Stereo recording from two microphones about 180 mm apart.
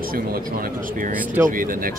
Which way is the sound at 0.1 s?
55° right (ahead or behind).